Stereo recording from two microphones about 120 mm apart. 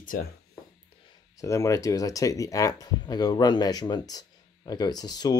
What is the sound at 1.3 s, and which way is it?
Speech, 25° left (ahead or behind).